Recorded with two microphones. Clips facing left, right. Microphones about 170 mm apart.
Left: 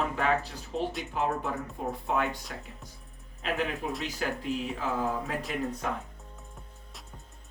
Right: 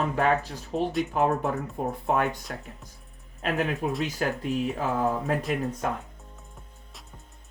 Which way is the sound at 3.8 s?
45° right (ahead or behind).